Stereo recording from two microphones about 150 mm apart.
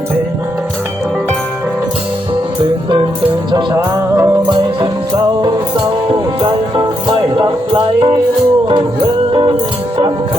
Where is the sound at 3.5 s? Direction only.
25° right (ahead or behind).